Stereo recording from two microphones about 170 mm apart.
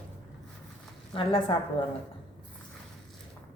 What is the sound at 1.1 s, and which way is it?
Speech, 30° left (ahead or behind).